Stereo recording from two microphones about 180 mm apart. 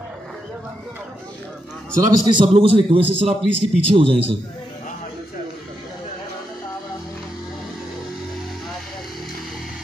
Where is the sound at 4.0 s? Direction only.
30° right (ahead or behind).